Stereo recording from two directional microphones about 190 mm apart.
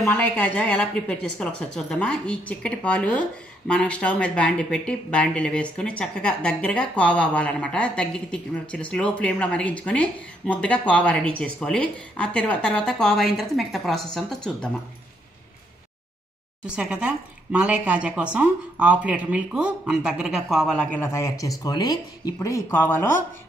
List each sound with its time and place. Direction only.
0.0 s speech: 10° left (ahead or behind)
16.6 s speech: 5° right (ahead or behind); by 23.1 s 10° left (ahead or behind)